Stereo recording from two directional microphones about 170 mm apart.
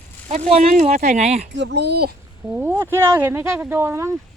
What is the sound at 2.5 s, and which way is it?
Speech, 15° right (ahead or behind).